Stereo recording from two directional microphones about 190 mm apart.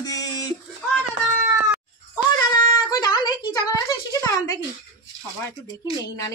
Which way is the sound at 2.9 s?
20° left (ahead or behind).